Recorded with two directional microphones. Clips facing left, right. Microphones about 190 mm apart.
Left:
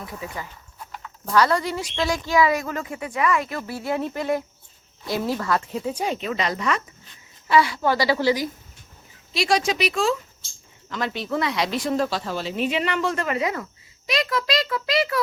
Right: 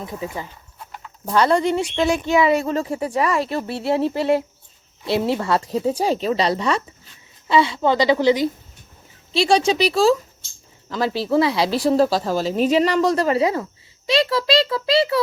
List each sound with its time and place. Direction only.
0.0 s speech: 25° right (ahead or behind)